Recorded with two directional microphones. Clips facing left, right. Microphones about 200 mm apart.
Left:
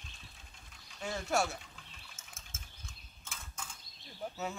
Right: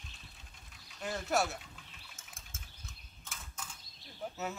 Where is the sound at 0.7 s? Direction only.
Centre (ahead or behind).